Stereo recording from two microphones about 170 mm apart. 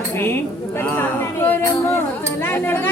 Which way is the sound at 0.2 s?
15° left (ahead or behind).